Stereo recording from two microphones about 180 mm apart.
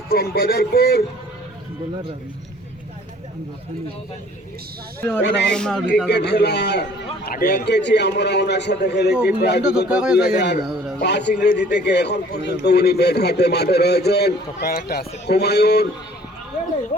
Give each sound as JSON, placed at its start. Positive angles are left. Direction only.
{"t": 0.1, "sound": "a man's voice", "side_deg": 55}
{"t": 5.2, "sound": "a man's voice", "side_deg": 70}
{"t": 5.5, "sound": "speech", "side_deg": 5}
{"t": 6.1, "sound": "a man's voice", "side_deg": 70}
{"t": 9.6, "sound": "a man's voice", "side_deg": -5}
{"t": 11.0, "sound": "a man's voice", "side_deg": 70}